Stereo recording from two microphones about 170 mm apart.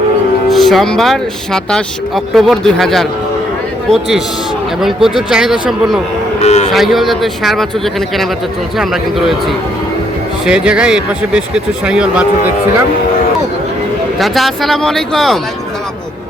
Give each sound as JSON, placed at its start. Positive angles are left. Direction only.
{"t": 0.5, "sound": "speech", "side_deg": 0}
{"t": 6.4, "sound": "a man's voice", "side_deg": 40}
{"t": 6.7, "sound": "speech", "side_deg": 0}
{"t": 8.8, "sound": "speech", "side_deg": 0}
{"t": 10.4, "sound": "speech", "side_deg": -5}
{"t": 14.2, "sound": "speech", "side_deg": 0}